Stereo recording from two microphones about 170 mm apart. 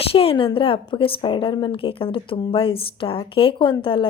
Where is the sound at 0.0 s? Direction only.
35° left (ahead or behind).